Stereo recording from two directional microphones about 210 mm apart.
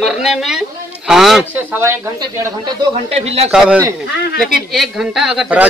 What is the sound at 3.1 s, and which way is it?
Speech, 30° right (ahead or behind).